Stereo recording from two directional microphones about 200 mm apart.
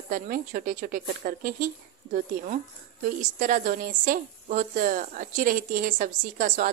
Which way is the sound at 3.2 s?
40° right (ahead or behind).